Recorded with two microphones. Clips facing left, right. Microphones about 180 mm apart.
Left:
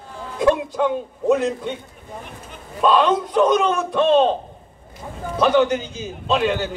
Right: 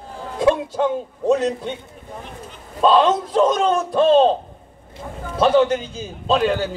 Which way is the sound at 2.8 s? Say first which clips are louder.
Right 1 dB; 25° right (ahead or behind).